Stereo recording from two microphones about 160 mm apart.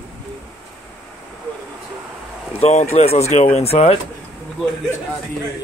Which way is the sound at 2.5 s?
45° left (ahead or behind).